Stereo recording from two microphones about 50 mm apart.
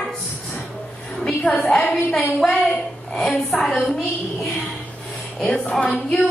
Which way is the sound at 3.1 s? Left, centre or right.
Centre.